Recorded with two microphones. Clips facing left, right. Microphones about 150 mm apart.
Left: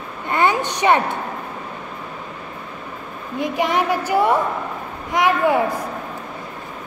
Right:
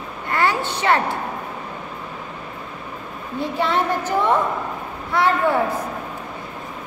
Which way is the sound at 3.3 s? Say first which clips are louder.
Left 1 dB; 15° left (ahead or behind).